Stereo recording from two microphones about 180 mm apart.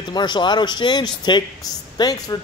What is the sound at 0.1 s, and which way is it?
Speech, 25° left (ahead or behind).